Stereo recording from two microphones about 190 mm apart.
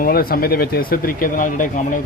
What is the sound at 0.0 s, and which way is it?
Speech, 50° left (ahead or behind).